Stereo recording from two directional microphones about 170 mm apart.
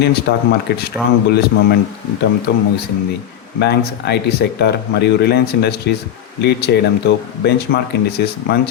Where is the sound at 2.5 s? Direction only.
65° left (ahead or behind).